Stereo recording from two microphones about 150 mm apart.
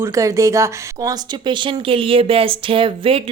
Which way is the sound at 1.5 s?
35° right (ahead or behind).